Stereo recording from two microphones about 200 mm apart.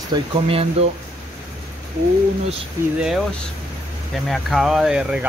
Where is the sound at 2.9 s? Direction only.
5° right (ahead or behind).